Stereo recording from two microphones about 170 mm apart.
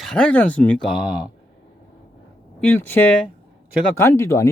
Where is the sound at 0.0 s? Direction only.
5° left (ahead or behind).